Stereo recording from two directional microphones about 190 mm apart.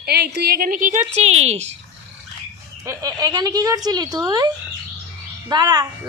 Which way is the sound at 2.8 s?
15° right (ahead or behind).